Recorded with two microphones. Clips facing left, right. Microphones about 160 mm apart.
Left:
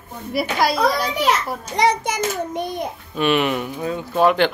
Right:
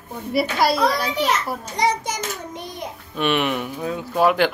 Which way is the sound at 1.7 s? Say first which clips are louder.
Left 4 dB; 65° left (ahead or behind).